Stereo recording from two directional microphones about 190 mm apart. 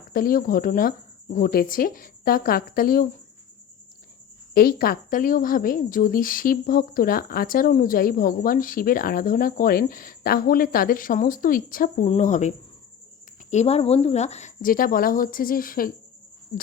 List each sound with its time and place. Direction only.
0.1 s speech: 45° left (ahead or behind)
4.5 s speech: 50° left (ahead or behind)
12.0 s speech: 35° left (ahead or behind)